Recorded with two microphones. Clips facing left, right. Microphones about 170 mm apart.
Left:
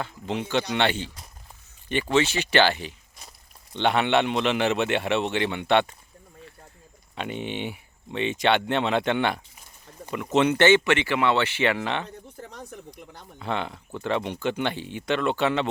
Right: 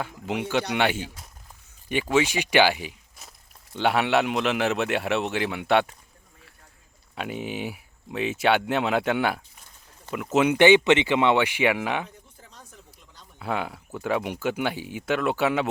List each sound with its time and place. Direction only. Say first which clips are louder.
0.0 s speech: right 1 dB; 10° right (ahead or behind)
7.2 s speech: even; 5° right (ahead or behind)
12.0 s a sound: left 8 dB; 75° left (ahead or behind)
13.4 s speech: even; 5° right (ahead or behind)